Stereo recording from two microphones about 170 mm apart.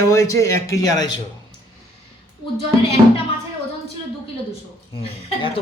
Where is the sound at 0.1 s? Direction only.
20° left (ahead or behind).